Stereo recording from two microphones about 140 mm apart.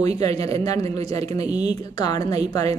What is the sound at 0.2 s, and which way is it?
Speech, 25° left (ahead or behind).